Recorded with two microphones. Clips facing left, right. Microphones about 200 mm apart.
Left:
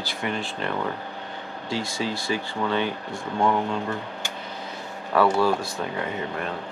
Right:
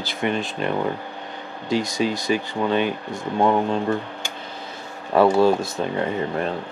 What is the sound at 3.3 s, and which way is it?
Speech, 30° right (ahead or behind).